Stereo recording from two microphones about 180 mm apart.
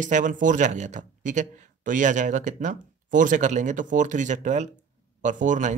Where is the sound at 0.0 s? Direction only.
45° right (ahead or behind).